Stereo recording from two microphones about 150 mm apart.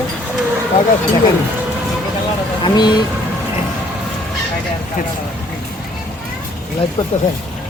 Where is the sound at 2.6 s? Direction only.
30° left (ahead or behind).